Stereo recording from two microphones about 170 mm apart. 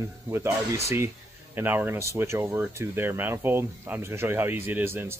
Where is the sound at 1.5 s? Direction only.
10° right (ahead or behind).